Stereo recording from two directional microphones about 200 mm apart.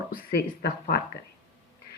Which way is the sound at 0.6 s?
50° left (ahead or behind).